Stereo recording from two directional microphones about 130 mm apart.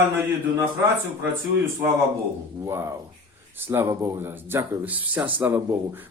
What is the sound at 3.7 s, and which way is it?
A man's voice, 20° right (ahead or behind).